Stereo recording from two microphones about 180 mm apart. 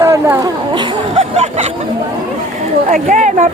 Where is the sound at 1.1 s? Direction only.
35° right (ahead or behind).